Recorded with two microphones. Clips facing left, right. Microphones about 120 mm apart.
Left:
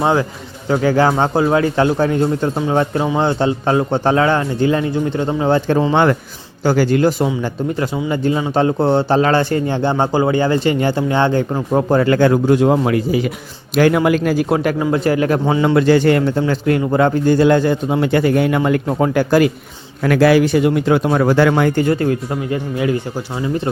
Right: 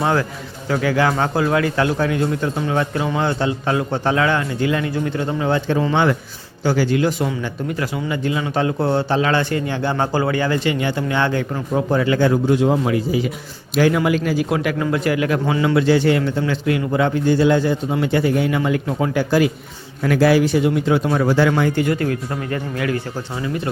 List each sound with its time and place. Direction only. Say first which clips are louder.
0.0 s speech: left 3 dB; 20° left (ahead or behind)
0.7 s a man's voice: left 4 dB; 30° left (ahead or behind); by 14.4 s 50° left (ahead or behind)
14.5 s a man's voice: left 4 dB; 40° left (ahead or behind)
15.6 s a man's voice: left 3 dB; 50° left (ahead or behind)
20.1 s speech: left 3 dB; 70° left (ahead or behind)
21.8 s speech: left 4 dB; 30° left (ahead or behind)